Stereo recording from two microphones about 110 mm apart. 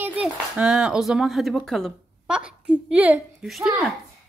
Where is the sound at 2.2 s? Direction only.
10° right (ahead or behind).